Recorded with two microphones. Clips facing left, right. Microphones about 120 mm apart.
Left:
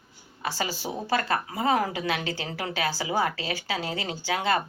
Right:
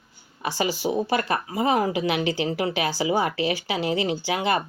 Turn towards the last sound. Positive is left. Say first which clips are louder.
# right 3 dB
turn(degrees=-15)  # may be behind; listen again after turning